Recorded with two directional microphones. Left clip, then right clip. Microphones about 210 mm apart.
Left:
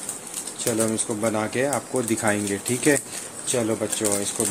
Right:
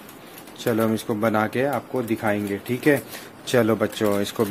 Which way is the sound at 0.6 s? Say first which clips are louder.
Right 2 dB; 25° right (ahead or behind).